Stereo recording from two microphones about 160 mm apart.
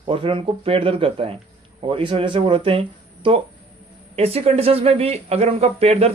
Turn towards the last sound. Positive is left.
turn(degrees=-40)  # may be behind; listen again after turning